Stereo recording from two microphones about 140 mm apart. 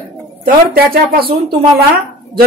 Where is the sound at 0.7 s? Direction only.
90° right.